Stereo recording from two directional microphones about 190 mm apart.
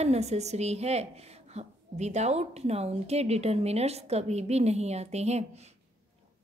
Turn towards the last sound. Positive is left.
turn(degrees=-35)  # may be behind; listen again after turning